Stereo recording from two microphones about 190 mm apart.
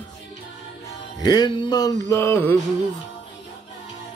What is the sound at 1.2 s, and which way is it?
Mantra, 20° left (ahead or behind).